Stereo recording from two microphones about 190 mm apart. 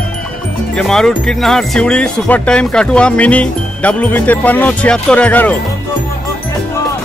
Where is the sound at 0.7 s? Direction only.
5° left (ahead or behind).